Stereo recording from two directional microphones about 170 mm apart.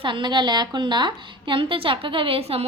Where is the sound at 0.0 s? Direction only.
30° right (ahead or behind).